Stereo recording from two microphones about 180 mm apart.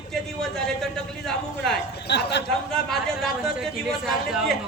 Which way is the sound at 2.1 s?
70° left (ahead or behind).